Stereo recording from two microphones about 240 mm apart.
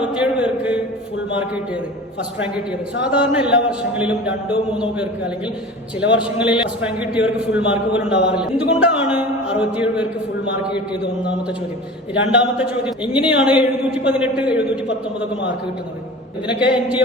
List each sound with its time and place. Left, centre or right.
0.0 s a man's voice: centre
3.0 s a man's voice: centre
12.4 s a man's voice: centre
16.5 s a man's voice: centre